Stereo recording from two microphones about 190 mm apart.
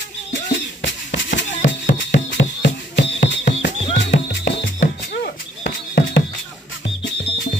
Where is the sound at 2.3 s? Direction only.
70° left (ahead or behind).